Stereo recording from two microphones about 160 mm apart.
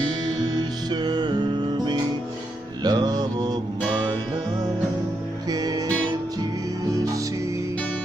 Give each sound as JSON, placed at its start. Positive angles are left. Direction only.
{"t": 1.0, "sound": "music", "side_deg": -25}
{"t": 5.5, "sound": "music", "side_deg": -25}